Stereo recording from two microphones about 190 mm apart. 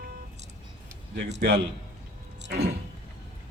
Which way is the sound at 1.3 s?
65° right (ahead or behind).